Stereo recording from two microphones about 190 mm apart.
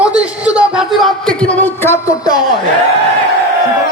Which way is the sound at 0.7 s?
Centre (ahead or behind).